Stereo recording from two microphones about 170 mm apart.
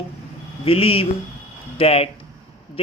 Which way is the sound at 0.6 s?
35° left (ahead or behind).